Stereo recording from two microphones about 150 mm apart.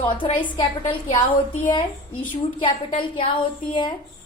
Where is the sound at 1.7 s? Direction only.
30° left (ahead or behind).